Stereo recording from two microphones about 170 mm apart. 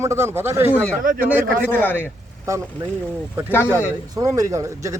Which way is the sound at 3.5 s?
10° left (ahead or behind).